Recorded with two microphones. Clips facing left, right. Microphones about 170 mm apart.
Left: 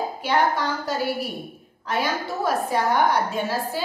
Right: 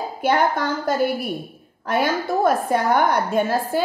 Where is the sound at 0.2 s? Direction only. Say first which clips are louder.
Right 3 dB; 50° right (ahead or behind).